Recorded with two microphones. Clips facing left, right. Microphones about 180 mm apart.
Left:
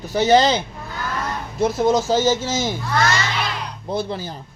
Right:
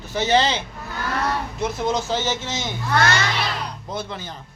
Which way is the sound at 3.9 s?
35° left (ahead or behind).